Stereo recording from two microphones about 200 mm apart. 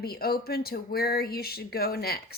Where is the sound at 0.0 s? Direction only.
50° left (ahead or behind).